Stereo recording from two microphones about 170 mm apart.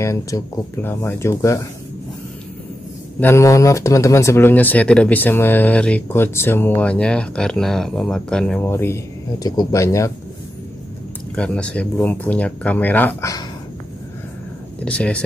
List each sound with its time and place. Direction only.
0.0 s speech: 15° left (ahead or behind)
3.2 s speech: 15° left (ahead or behind)
11.3 s speech: 5° left (ahead or behind)
14.8 s speech: 5° left (ahead or behind)